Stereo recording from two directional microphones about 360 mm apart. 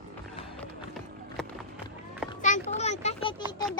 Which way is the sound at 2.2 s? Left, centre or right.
Left.